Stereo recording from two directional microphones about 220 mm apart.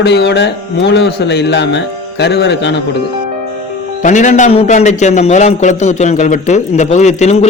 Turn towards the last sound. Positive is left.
turn(degrees=30)  # may be behind; listen again after turning